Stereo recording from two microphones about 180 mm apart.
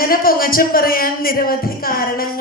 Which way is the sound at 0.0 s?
55° left (ahead or behind).